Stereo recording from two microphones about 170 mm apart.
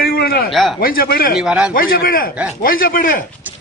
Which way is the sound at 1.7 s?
55° left (ahead or behind).